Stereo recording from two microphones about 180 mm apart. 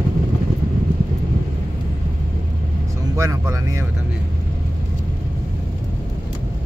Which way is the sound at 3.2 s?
20° right (ahead or behind).